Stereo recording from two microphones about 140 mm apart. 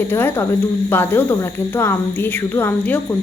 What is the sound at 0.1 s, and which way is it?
A woman's voice, 15° left (ahead or behind).